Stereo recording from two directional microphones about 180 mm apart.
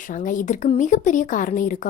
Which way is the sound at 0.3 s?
45° left (ahead or behind).